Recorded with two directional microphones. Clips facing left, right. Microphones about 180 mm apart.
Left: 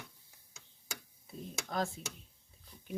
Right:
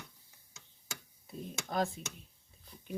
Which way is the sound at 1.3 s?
Centre (ahead or behind).